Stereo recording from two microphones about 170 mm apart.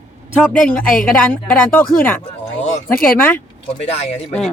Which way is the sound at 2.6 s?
50° left (ahead or behind).